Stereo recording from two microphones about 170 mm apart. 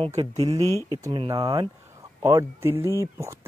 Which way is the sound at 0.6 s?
20° left (ahead or behind).